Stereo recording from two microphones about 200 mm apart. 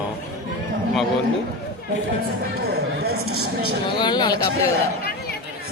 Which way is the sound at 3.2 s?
90° right.